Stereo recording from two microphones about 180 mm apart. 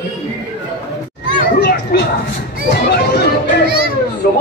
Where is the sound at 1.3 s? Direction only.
60° left (ahead or behind).